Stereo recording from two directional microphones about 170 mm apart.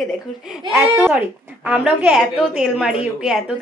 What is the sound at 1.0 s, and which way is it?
Speech, 5° right (ahead or behind).